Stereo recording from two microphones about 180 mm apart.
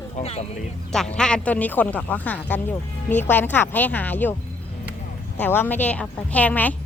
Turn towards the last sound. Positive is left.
turn(degrees=10)  # may be behind; listen again after turning